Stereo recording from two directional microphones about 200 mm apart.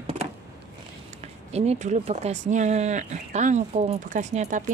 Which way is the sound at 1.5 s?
30° right (ahead or behind).